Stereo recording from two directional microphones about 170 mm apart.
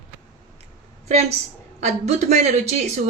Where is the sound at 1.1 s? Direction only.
40° right (ahead or behind).